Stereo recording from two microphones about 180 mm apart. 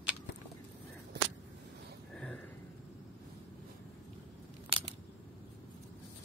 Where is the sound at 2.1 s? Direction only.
10° left (ahead or behind).